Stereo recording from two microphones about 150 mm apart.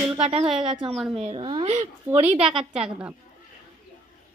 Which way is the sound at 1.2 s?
35° right (ahead or behind).